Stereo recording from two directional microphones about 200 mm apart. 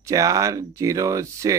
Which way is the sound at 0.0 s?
15° right (ahead or behind).